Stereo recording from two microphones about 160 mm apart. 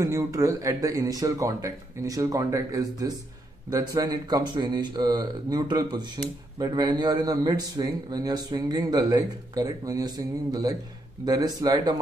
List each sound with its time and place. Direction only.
0.0 s speech: 20° right (ahead or behind)